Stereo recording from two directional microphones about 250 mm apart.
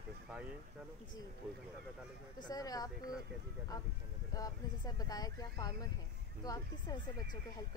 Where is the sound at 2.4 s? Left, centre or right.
Centre.